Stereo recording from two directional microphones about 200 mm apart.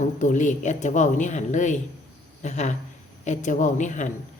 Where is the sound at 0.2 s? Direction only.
40° left (ahead or behind).